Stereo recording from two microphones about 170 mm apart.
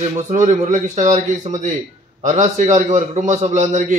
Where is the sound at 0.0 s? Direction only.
40° right (ahead or behind).